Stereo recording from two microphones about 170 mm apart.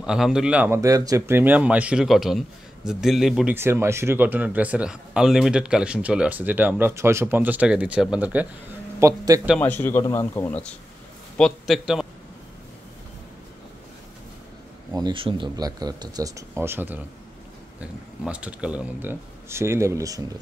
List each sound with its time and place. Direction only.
0.0 s speech: 5° right (ahead or behind)
3.5 s a man's voice: 15° right (ahead or behind)
9.0 s speech: 20° right (ahead or behind)
9.6 s a man's voice: 10° left (ahead or behind)
11.3 s speech: centre (ahead or behind)
15.0 s speech: 25° right (ahead or behind); by 17.0 s 10° right (ahead or behind)
18.2 s a man's voice: 5° right (ahead or behind)